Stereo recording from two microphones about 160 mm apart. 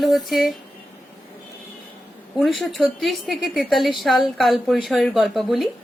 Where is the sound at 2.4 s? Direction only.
Centre (ahead or behind).